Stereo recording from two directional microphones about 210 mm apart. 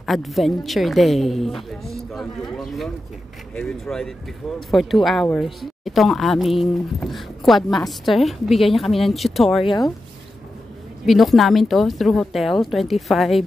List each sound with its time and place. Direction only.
0.0 s speech: centre (ahead or behind)
9.7 s speech: 20° left (ahead or behind)
11.1 s speech: centre (ahead or behind)